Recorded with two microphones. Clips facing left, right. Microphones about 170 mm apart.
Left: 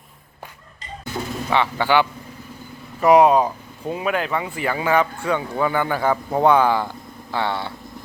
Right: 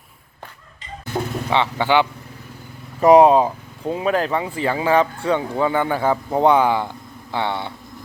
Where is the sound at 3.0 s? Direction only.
30° right (ahead or behind).